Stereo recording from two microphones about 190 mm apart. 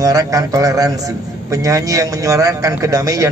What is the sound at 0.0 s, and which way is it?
A man's voice, 20° right (ahead or behind).